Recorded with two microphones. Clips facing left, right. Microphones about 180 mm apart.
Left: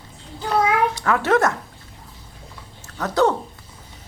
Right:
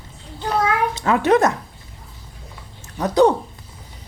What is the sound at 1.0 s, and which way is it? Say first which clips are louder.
Speech: right 7 dB; 20° right (ahead or behind).